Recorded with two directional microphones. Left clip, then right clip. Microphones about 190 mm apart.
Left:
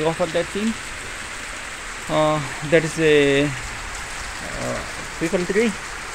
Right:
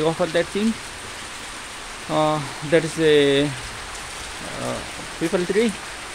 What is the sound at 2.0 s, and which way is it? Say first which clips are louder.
Speech: left 1 dB; 5° right (ahead or behind).